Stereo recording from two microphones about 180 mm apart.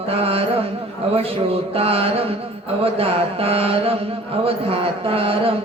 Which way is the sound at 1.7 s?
35° right (ahead or behind).